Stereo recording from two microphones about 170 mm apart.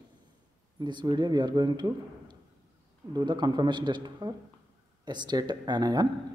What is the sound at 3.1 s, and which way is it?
A man's voice, 25° right (ahead or behind).